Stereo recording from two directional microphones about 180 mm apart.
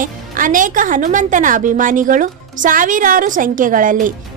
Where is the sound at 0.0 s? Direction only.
50° right (ahead or behind).